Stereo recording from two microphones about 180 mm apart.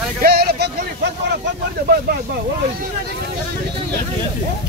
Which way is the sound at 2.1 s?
60° right (ahead or behind).